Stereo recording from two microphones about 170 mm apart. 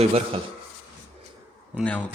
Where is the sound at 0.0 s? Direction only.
40° right (ahead or behind).